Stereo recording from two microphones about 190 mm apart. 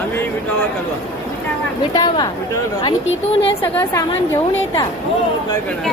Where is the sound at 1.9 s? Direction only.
20° left (ahead or behind).